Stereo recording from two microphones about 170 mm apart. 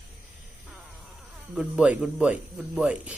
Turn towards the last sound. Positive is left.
turn(degrees=-5)  # may be behind; listen again after turning